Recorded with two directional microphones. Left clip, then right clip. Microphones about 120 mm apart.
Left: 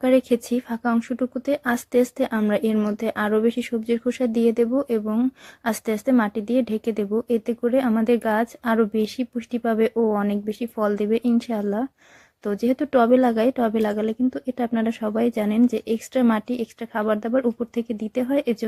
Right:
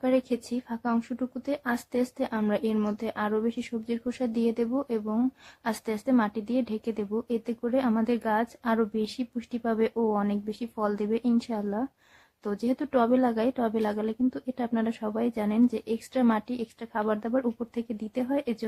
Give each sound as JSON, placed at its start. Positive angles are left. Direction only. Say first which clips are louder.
{"t": 0.0, "sound": "speech", "louder": "left 8 dB", "side_deg": 35}